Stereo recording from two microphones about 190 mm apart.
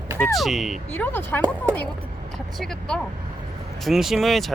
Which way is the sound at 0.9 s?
10° left (ahead or behind).